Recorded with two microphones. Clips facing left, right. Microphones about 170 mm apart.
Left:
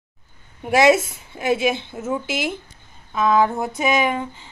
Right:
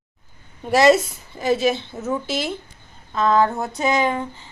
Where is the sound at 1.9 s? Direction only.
10° left (ahead or behind).